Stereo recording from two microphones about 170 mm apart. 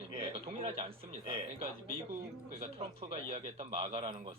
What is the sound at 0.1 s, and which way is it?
A man's voice, 30° right (ahead or behind).